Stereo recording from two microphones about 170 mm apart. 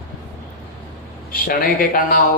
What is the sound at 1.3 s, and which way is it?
Speech, 55° left (ahead or behind).